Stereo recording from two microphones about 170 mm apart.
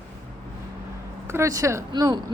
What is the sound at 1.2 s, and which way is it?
Speech, 15° right (ahead or behind).